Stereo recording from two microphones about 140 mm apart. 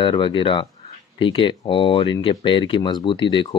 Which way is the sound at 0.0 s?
35° left (ahead or behind).